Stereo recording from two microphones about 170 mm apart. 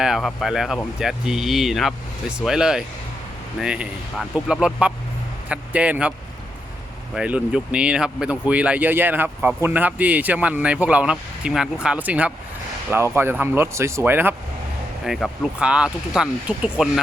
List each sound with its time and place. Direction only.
0.0 s speech: centre (ahead or behind)